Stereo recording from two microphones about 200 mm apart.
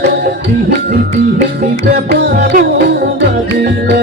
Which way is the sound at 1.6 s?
50° right (ahead or behind).